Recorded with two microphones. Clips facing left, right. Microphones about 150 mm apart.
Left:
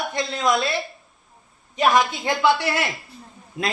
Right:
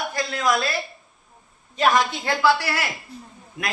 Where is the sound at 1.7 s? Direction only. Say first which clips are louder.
Left 1 dB; 20° left (ahead or behind).